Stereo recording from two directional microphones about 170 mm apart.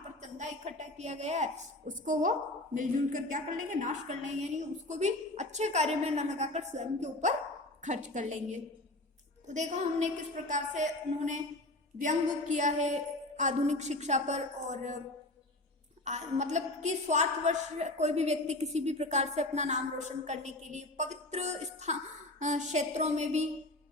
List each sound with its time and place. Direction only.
0.2 s a woman's voice: 45° right (ahead or behind)
16.0 s a woman's voice: 45° right (ahead or behind)